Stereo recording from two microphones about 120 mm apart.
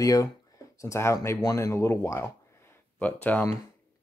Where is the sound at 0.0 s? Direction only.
30° left (ahead or behind).